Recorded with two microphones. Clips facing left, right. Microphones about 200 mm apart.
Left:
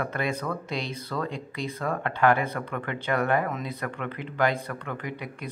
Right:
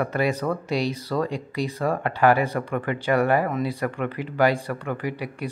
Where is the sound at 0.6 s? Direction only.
10° right (ahead or behind).